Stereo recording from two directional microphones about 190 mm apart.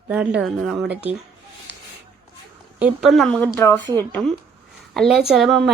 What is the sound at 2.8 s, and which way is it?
A woman's voice, 5° right (ahead or behind).